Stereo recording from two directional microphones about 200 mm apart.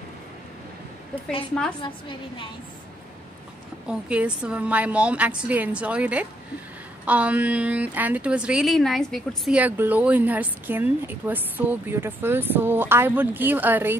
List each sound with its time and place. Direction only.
1.8 s a woman's voice: 25° left (ahead or behind)
3.8 s a woman's voice: 5° right (ahead or behind)